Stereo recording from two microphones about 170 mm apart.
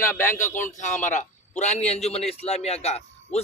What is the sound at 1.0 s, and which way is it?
A man's voice, 45° left (ahead or behind).